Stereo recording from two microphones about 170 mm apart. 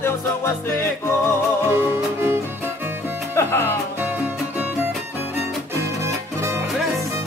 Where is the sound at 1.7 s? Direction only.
15° right (ahead or behind).